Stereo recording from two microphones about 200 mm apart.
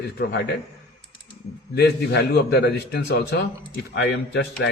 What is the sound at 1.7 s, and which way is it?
A man's voice, 55° left (ahead or behind).